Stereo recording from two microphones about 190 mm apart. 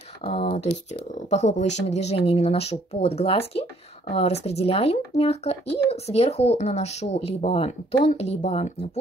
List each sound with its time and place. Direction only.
0.2 s speech: 30° left (ahead or behind)